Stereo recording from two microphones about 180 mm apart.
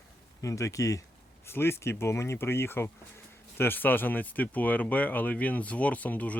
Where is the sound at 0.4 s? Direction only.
15° left (ahead or behind).